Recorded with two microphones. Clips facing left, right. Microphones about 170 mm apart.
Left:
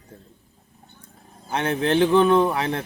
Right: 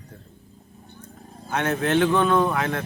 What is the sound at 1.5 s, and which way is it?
Speech, 30° left (ahead or behind).